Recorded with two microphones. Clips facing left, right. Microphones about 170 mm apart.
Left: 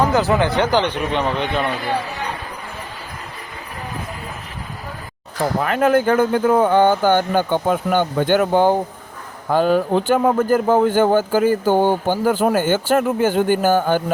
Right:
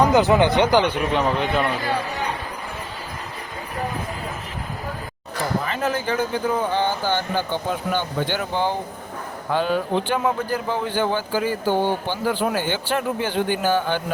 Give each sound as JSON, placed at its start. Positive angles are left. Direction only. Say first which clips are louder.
{"t": 0.0, "sound": "speech", "louder": "right 1 dB", "side_deg": -15}
{"t": 5.6, "sound": "speech", "louder": "left 8 dB", "side_deg": 55}